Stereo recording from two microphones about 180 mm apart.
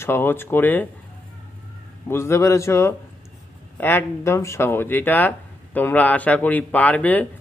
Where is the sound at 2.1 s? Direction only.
15° left (ahead or behind).